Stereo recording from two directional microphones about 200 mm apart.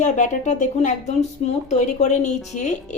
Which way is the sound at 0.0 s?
35° left (ahead or behind).